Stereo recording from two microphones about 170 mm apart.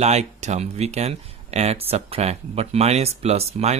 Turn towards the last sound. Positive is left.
turn(degrees=-40)  # may be behind; listen again after turning